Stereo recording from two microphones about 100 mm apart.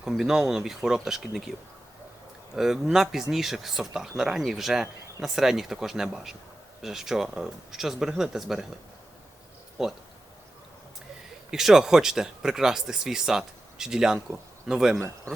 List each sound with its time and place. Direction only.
0.0 s speech: 5° right (ahead or behind)
2.6 s speech: 5° right (ahead or behind)
9.8 s speech: centre (ahead or behind)
11.5 s speech: 5° right (ahead or behind)
14.9 s speech: 25° right (ahead or behind)